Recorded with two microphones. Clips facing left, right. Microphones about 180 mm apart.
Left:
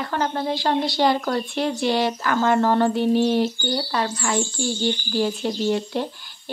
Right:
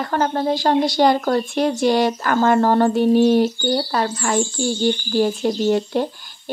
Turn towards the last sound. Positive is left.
turn(degrees=-45)  # may be behind; listen again after turning